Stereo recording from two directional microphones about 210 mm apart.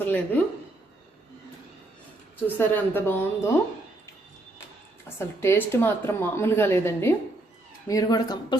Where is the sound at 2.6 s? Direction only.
10° left (ahead or behind).